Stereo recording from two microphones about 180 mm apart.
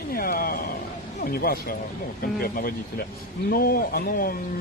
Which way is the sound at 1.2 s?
55° left (ahead or behind).